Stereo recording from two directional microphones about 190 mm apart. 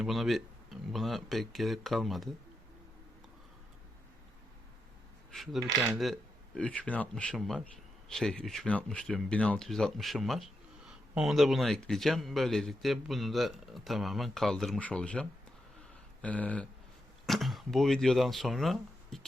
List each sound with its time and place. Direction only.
0.0 s speech: centre (ahead or behind)
5.3 s speech: centre (ahead or behind)